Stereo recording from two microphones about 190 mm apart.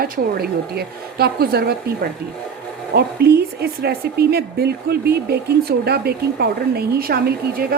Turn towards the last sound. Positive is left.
turn(degrees=-55)  # may be behind; listen again after turning